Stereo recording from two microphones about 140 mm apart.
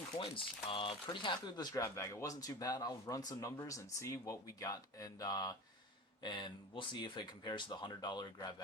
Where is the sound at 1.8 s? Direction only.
20° left (ahead or behind).